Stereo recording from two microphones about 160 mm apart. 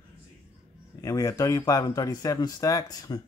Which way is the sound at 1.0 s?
20° left (ahead or behind).